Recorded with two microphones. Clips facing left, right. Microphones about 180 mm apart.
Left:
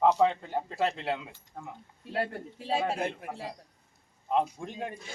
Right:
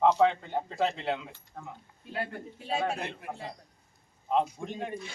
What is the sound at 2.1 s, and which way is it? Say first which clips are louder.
Speech: left 3 dB; 35° left (ahead or behind).